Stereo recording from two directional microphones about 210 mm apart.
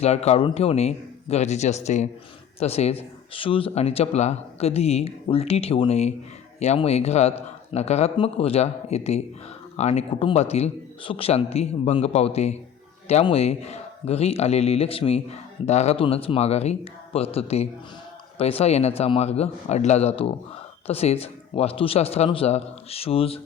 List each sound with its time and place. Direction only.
0.0 s a man's voice: 30° left (ahead or behind)